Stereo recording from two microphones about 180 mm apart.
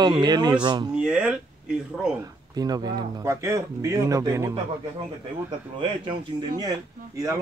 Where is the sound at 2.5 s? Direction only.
20° right (ahead or behind).